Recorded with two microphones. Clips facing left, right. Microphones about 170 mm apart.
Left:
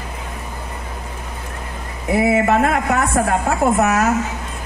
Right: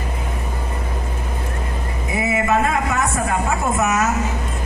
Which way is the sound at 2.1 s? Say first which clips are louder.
Left 4 dB; 65° left (ahead or behind).